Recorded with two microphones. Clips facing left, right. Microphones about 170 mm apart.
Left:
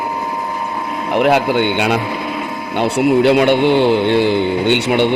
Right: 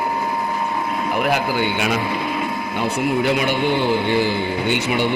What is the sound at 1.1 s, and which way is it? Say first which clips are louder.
Speech: left 8 dB; 70° left (ahead or behind).